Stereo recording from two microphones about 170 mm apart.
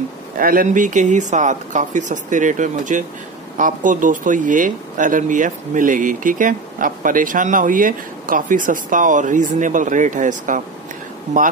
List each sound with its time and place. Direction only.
0.4 s speech: 55° right (ahead or behind)